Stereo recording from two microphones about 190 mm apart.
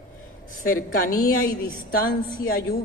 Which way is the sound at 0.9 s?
50° left (ahead or behind).